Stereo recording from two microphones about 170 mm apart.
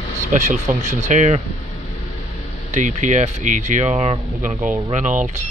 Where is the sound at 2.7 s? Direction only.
45° right (ahead or behind).